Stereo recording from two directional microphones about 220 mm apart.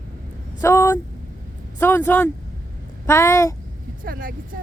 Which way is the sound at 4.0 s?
40° right (ahead or behind).